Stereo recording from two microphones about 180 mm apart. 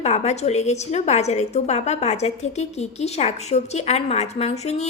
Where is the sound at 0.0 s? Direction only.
40° left (ahead or behind).